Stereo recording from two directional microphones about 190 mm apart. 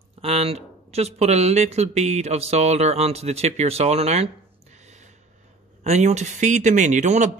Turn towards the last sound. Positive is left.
turn(degrees=-40)  # may be behind; listen again after turning